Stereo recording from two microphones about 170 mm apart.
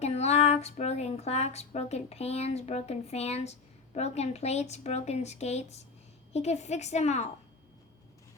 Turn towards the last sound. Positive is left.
turn(degrees=40)  # may be behind; listen again after turning